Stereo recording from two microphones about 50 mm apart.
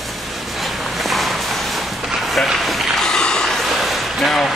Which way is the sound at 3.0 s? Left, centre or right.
Centre.